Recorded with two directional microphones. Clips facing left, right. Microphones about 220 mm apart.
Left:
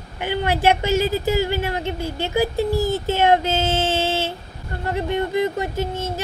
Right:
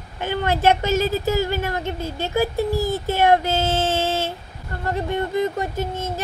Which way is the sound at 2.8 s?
15° right (ahead or behind).